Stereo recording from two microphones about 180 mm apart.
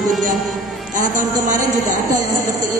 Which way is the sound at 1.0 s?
45° right (ahead or behind).